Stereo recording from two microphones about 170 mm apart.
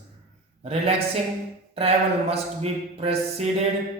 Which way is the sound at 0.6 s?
35° right (ahead or behind).